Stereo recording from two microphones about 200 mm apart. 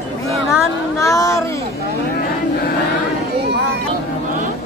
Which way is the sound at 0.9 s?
15° left (ahead or behind).